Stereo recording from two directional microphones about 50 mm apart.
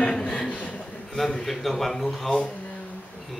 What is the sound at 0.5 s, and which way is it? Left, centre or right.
Chuckle, left.